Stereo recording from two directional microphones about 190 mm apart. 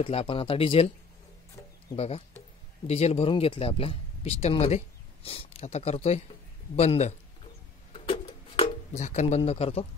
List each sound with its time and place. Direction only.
0.0 s speech: 30° left (ahead or behind)
2.0 s speech: 35° left (ahead or behind)
7.9 s a sound: 30° left (ahead or behind)